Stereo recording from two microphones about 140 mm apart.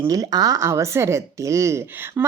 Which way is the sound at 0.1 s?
25° right (ahead or behind).